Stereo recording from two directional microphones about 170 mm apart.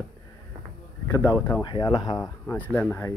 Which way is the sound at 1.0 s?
15° left (ahead or behind).